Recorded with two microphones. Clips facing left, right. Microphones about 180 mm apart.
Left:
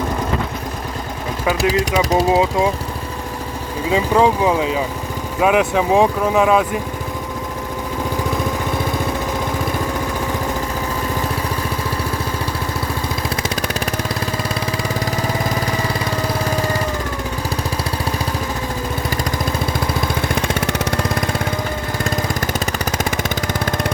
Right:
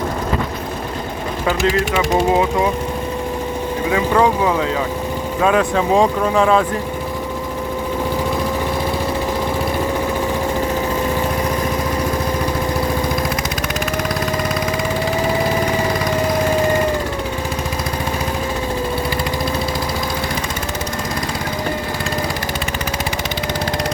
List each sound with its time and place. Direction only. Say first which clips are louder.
1.5 s speech: even; 10° left (ahead or behind)
3.9 s speech: left 1 dB; 15° left (ahead or behind)